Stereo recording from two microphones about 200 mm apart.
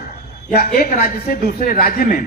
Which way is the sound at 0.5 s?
50° left (ahead or behind).